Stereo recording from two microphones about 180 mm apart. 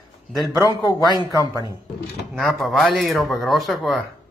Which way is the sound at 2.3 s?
Centre (ahead or behind).